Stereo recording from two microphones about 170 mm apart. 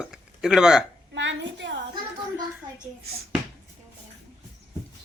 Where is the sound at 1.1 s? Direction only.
90° right.